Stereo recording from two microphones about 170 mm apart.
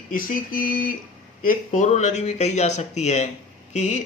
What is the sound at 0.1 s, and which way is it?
Speech, 55° left (ahead or behind).